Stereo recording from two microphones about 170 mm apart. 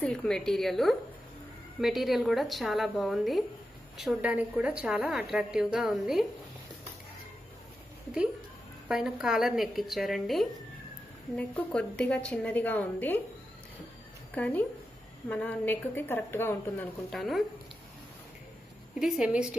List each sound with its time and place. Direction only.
0.0 s a woman's voice: 5° left (ahead or behind)
8.8 s a woman's voice: 5° right (ahead or behind)
14.3 s a woman's voice: 10° left (ahead or behind)
17.1 s a woman's voice: centre (ahead or behind)
18.9 s a woman's voice: 5° right (ahead or behind)